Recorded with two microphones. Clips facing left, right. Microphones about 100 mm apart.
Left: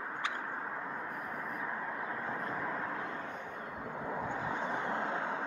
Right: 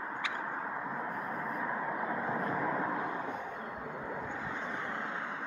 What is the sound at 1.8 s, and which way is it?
Vehicle, 10° right (ahead or behind).